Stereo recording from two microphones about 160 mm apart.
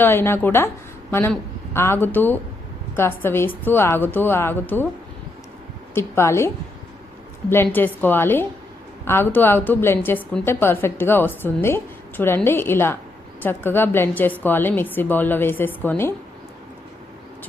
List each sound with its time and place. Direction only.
0.0 s a woman's voice: 15° left (ahead or behind)
5.9 s a woman's voice: 15° left (ahead or behind)
7.5 s a woman's voice: 15° left (ahead or behind)